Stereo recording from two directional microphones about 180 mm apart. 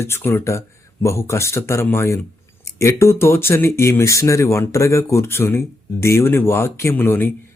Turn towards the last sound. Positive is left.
turn(degrees=10)  # may be behind; listen again after turning